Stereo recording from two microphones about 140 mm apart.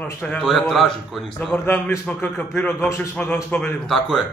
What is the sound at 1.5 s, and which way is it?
Speech, 15° left (ahead or behind).